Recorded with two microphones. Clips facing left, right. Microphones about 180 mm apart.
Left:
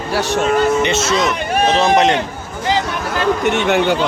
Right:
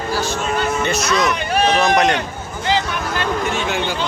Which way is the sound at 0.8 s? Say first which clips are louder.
Left 2 dB; 25° left (ahead or behind).